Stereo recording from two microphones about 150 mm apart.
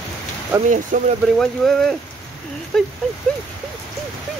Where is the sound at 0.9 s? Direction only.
55° right (ahead or behind).